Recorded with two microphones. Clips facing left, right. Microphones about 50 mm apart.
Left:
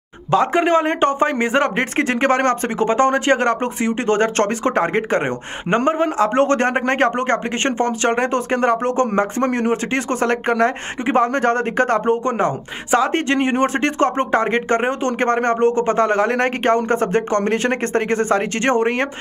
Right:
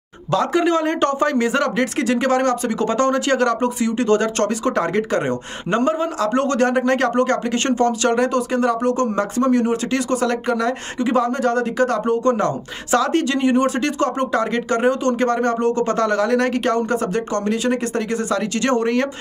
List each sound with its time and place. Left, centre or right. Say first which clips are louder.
0.3 s a man's voice: left 2 dB; left
2.8 s a man's voice: left 3 dB; left